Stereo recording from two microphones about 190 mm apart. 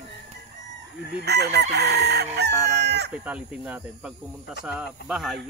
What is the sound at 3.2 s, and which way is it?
Cricket, 10° right (ahead or behind).